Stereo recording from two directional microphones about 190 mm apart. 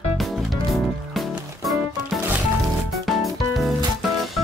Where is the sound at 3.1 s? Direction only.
Centre (ahead or behind).